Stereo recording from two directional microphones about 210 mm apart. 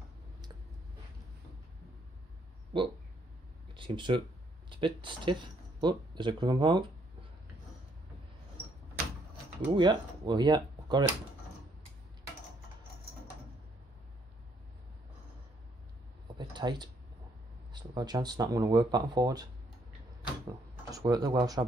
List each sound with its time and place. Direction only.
2.7 s speech: 25° right (ahead or behind)
9.8 s speech: 20° right (ahead or behind)
16.3 s a sound: 20° right (ahead or behind)
17.7 s speech: 20° right (ahead or behind)
20.9 s speech: 15° right (ahead or behind)